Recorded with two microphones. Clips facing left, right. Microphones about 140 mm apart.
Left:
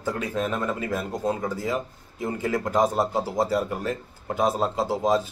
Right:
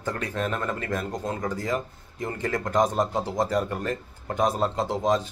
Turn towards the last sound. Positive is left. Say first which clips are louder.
# left 1 dB
turn(degrees=5)  # may be behind; listen again after turning